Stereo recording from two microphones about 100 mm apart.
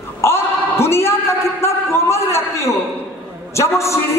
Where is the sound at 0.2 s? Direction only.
25° left (ahead or behind).